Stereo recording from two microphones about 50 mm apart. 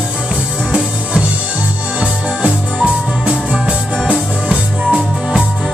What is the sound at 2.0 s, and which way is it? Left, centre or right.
Music, right.